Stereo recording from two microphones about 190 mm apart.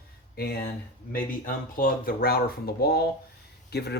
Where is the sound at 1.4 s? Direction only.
45° left (ahead or behind).